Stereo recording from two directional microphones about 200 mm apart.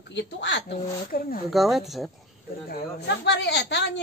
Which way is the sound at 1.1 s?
45° left (ahead or behind).